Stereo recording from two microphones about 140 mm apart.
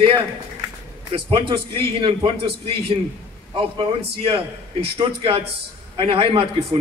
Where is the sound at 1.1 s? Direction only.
40° right (ahead or behind).